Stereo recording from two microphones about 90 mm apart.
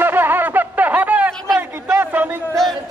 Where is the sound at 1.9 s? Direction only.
25° right (ahead or behind).